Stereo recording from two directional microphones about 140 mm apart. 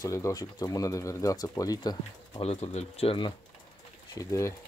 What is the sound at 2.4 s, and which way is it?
Speech, 45° left (ahead or behind).